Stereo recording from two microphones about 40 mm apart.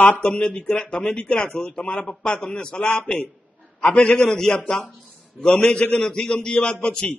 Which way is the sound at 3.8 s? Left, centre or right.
Left.